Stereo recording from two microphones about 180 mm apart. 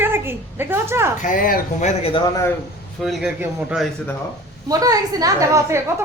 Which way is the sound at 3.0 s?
Centre (ahead or behind).